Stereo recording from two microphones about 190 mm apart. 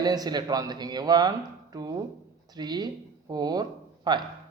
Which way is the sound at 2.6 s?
20° right (ahead or behind).